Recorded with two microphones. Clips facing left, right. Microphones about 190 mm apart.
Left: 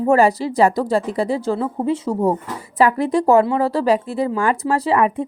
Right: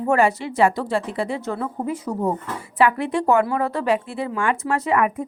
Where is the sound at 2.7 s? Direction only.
40° left (ahead or behind).